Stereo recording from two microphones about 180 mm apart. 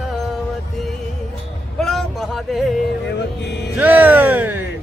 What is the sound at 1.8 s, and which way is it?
Vehicle, centre (ahead or behind).